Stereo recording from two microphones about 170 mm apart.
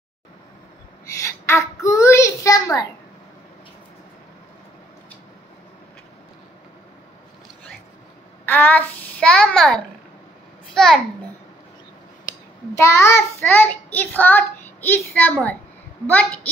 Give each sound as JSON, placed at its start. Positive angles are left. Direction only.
{"t": 1.1, "sound": "a sound", "side_deg": 15}
{"t": 8.5, "sound": "a child's voice", "side_deg": 10}
{"t": 12.7, "sound": "a child's voice", "side_deg": 15}